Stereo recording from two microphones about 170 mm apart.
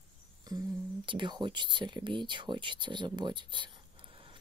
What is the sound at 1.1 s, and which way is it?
Speech, 25° right (ahead or behind).